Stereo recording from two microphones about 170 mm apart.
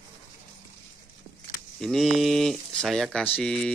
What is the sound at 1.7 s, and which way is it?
Speech, centre (ahead or behind).